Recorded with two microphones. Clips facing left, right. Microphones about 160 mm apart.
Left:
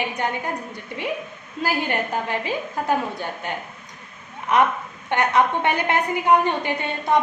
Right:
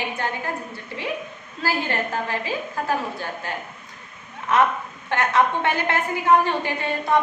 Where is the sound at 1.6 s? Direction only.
15° left (ahead or behind).